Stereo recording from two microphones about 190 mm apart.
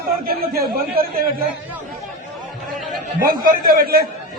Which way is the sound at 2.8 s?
Centre (ahead or behind).